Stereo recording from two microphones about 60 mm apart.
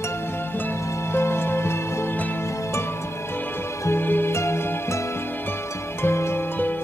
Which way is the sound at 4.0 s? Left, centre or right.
Left.